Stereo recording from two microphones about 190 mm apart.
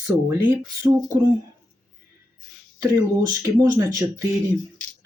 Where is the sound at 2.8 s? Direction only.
15° right (ahead or behind).